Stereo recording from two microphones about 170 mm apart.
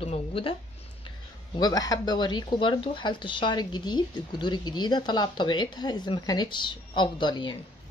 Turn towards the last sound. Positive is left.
turn(degrees=30)  # may be behind; listen again after turning